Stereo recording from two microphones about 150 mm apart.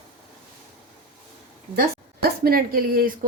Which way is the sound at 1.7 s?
90° right.